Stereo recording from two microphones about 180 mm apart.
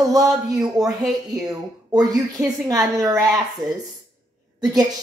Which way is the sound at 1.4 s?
20° right (ahead or behind).